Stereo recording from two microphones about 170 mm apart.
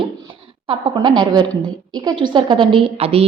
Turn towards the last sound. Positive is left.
turn(degrees=-35)  # may be behind; listen again after turning